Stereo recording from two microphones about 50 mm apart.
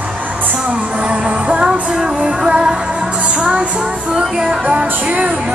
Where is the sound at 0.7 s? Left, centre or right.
Right.